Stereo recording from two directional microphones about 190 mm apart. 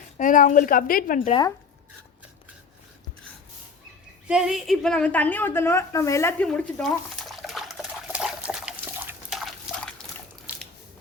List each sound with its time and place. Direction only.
0.2 s a woman's voice: 45° left (ahead or behind)
1.3 s speech: 20° left (ahead or behind)
4.3 s a sound: 5° right (ahead or behind)